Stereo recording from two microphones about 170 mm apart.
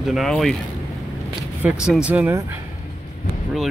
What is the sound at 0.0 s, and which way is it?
Speech, centre (ahead or behind).